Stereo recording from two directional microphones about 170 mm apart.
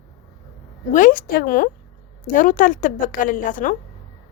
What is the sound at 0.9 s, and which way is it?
A woman's voice, 50° left (ahead or behind).